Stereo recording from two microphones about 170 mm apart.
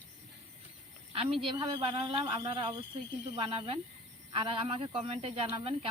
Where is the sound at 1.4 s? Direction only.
30° right (ahead or behind).